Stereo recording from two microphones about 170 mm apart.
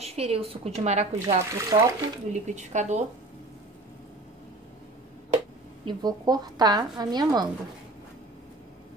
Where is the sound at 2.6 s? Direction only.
45° right (ahead or behind).